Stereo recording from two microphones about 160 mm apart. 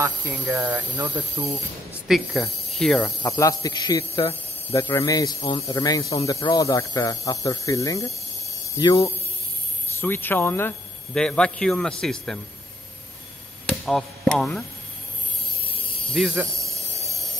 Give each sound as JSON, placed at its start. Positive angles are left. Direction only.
{"t": 0.0, "sound": "speech", "side_deg": -15}
{"t": 2.0, "sound": "a man's voice", "side_deg": 0}
{"t": 3.0, "sound": "a man's voice", "side_deg": 15}
{"t": 13.7, "sound": "speech", "side_deg": 5}
{"t": 16.1, "sound": "a man's voice", "side_deg": 0}
{"t": 16.3, "sound": "a sound", "side_deg": -20}